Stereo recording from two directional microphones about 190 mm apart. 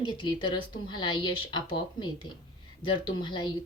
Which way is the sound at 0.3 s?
25° left (ahead or behind).